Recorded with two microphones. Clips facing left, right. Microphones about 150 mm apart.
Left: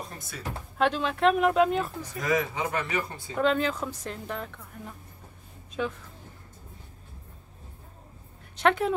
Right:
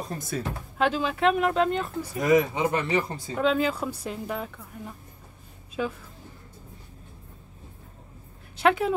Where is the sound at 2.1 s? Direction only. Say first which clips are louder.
Right 6 dB; 20° right (ahead or behind).